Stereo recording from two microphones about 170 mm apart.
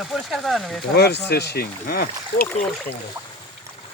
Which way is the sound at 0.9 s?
75° left (ahead or behind).